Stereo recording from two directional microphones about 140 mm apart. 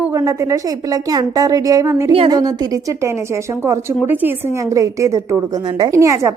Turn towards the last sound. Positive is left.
turn(degrees=-20)  # may be behind; listen again after turning